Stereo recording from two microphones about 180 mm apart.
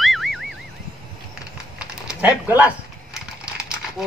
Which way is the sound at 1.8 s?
5° right (ahead or behind).